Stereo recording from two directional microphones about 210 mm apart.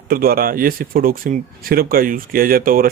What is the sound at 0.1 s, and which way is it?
Speech, 45° right (ahead or behind).